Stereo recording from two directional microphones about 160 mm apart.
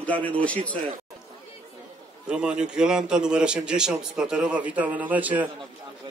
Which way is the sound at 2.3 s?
5° right (ahead or behind).